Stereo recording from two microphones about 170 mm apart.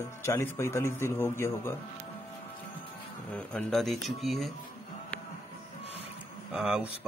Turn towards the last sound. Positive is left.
turn(degrees=-5)  # may be behind; listen again after turning